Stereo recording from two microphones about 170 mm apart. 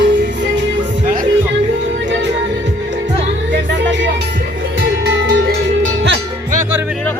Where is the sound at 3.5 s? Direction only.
90° right.